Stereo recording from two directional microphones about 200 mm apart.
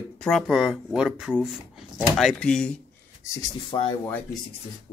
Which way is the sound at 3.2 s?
20° left (ahead or behind).